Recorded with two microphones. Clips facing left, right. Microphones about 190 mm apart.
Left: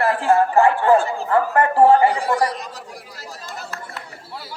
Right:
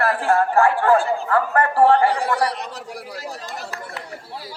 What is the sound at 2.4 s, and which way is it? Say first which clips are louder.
Speech: left 1 dB; 65° right (ahead or behind).